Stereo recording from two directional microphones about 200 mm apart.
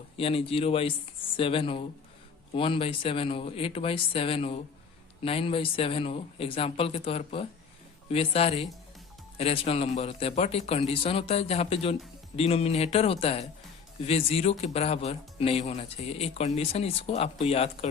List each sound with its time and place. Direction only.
0.2 s a man's voice: 30° left (ahead or behind)